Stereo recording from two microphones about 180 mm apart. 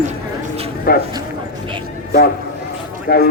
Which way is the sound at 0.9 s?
55° left (ahead or behind).